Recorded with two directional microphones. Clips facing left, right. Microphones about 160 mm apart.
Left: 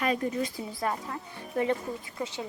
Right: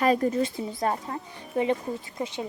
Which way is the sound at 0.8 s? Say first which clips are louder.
Right 3 dB; 35° right (ahead or behind).